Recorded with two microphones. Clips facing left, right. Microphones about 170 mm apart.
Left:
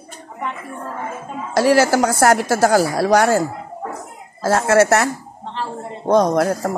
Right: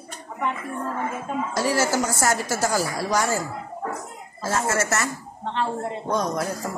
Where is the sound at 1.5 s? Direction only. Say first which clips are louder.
Left 10 dB; 75° left (ahead or behind).